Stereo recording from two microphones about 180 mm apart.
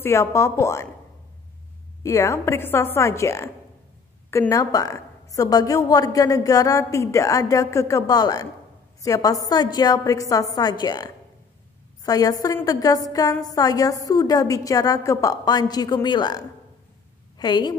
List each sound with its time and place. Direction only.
0.0 s a woman's voice: 15° left (ahead or behind)
2.0 s a woman's voice: 15° left (ahead or behind)